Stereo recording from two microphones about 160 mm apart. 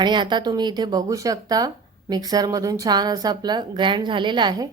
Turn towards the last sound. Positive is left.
turn(degrees=-30)  # may be behind; listen again after turning